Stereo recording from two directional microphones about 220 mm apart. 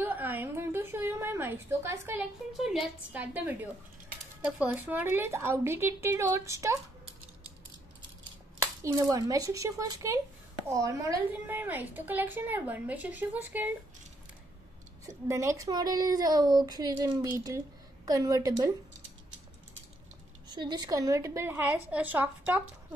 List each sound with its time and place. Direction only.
0.0 s a woman's voice: 10° right (ahead or behind)
8.8 s a woman's voice: 15° right (ahead or behind)
15.0 s a woman's voice: 15° right (ahead or behind)
20.5 s a woman's voice: 20° right (ahead or behind)